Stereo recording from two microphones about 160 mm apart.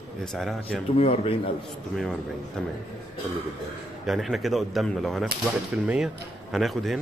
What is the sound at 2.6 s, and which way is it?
Speech, 5° left (ahead or behind).